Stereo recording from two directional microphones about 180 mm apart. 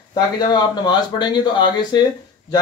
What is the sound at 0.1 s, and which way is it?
Speech, 25° left (ahead or behind).